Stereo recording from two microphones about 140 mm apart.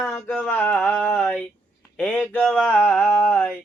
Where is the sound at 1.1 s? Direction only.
5° left (ahead or behind).